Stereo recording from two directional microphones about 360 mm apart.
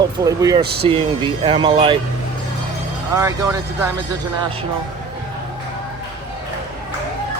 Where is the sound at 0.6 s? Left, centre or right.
Right.